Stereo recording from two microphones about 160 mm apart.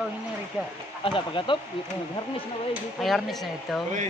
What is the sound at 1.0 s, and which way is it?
Speech, 30° left (ahead or behind).